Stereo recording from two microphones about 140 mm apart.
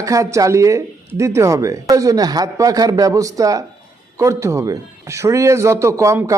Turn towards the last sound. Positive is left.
turn(degrees=-20)  # may be behind; listen again after turning